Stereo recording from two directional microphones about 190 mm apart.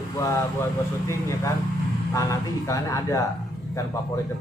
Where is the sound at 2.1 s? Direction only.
15° left (ahead or behind).